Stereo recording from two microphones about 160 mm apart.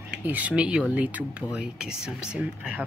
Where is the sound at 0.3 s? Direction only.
10° right (ahead or behind).